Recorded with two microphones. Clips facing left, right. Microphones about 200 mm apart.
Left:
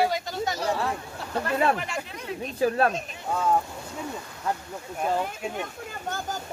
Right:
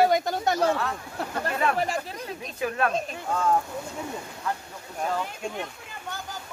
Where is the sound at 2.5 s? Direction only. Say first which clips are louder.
Left 4 dB; 35° left (ahead or behind).